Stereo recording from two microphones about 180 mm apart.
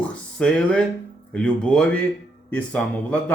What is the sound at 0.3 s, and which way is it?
A man's voice, 5° left (ahead or behind).